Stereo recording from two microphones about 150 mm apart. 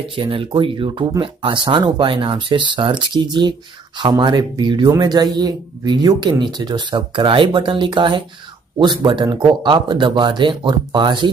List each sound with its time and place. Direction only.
0.1 s speech: 35° right (ahead or behind)